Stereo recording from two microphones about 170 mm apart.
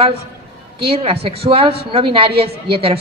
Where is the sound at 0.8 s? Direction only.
35° right (ahead or behind).